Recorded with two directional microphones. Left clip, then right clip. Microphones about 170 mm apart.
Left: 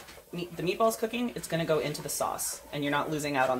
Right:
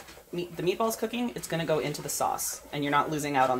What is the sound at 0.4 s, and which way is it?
Speech, 40° right (ahead or behind).